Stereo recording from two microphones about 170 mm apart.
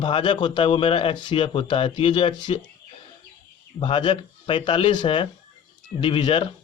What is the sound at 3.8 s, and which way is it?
A man's voice, 30° left (ahead or behind).